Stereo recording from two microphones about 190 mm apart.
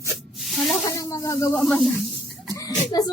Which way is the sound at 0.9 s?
20° left (ahead or behind).